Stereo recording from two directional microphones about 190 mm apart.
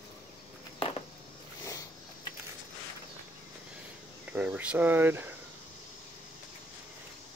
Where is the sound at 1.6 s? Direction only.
15° left (ahead or behind).